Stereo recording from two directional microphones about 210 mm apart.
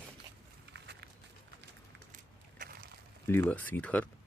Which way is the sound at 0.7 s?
55° right (ahead or behind).